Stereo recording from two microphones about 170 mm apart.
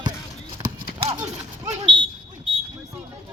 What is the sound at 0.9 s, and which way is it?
Clip-clop, 35° right (ahead or behind).